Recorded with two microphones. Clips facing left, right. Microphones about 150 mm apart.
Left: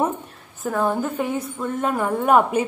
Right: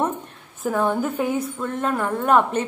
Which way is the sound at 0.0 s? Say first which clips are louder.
Left 1 dB; centre (ahead or behind).